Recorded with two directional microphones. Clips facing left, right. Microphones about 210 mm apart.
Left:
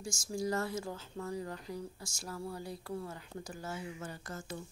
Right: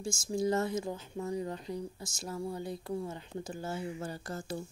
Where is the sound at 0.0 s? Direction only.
25° right (ahead or behind).